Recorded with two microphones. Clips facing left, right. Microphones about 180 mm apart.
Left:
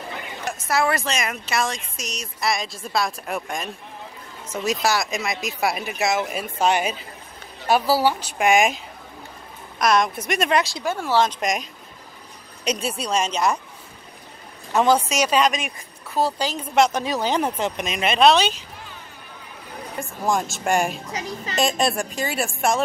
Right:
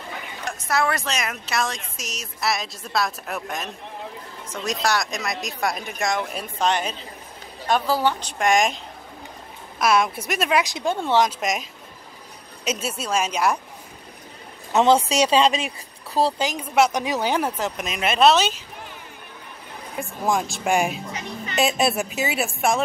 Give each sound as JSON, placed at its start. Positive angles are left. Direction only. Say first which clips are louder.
{"t": 0.5, "sound": "a woman's voice", "louder": "left 1 dB", "side_deg": 5}
{"t": 10.6, "sound": "speech", "louder": "right 1 dB", "side_deg": -20}
{"t": 11.2, "sound": "speech", "louder": "left 1 dB", "side_deg": -5}
{"t": 12.6, "sound": "speech", "louder": "left 2 dB", "side_deg": -5}
{"t": 14.7, "sound": "speech", "louder": "right 1 dB", "side_deg": -20}
{"t": 16.4, "sound": "speech", "louder": "even", "side_deg": -10}
{"t": 20.0, "sound": "speech", "louder": "even", "side_deg": 0}